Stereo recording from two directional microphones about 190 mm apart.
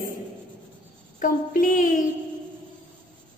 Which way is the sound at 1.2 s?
45° left (ahead or behind).